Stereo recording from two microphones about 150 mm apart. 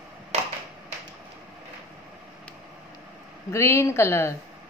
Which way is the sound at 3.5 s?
20° left (ahead or behind).